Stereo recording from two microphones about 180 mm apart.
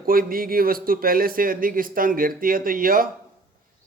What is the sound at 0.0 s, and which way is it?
A man's voice, 55° right (ahead or behind).